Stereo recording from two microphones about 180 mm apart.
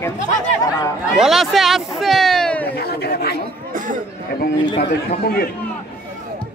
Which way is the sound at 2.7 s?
60° left (ahead or behind).